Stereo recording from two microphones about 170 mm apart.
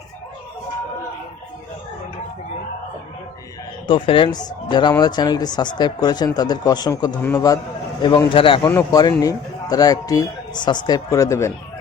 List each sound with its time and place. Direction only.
3.8 s speech: 30° left (ahead or behind)